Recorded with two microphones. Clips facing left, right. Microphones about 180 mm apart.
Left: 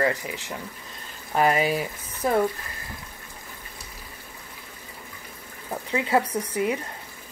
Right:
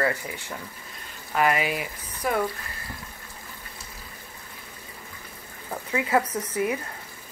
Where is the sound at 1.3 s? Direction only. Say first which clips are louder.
Left 2 dB; 35° left (ahead or behind).